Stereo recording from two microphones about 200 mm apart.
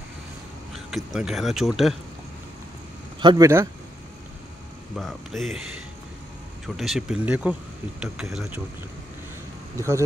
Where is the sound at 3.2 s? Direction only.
20° right (ahead or behind).